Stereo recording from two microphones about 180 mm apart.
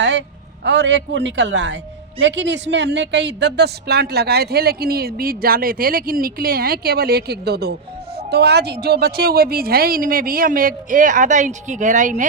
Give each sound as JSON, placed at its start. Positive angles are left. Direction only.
{"t": 0.0, "sound": "a man's voice", "side_deg": -75}